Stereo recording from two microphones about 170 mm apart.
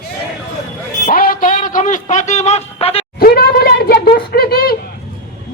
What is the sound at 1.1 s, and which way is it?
A man's voice, 55° left (ahead or behind).